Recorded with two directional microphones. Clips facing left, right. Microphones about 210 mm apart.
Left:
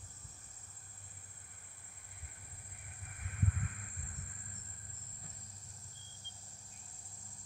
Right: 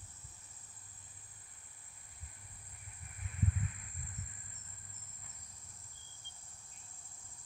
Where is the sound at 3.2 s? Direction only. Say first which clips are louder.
Right 1 dB; 55° left (ahead or behind).